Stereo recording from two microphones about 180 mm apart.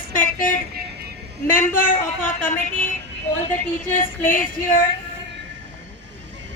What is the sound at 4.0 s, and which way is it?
Female singing, 50° left (ahead or behind).